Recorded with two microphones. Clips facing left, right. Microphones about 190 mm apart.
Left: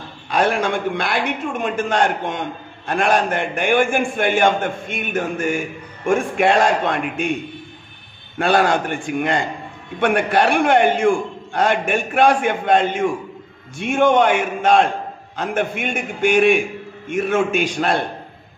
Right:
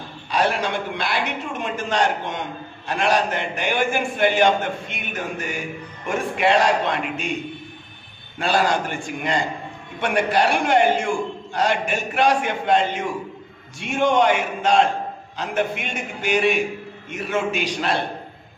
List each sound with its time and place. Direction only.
0.3 s a man's voice: 50° left (ahead or behind)
8.4 s a man's voice: 55° left (ahead or behind)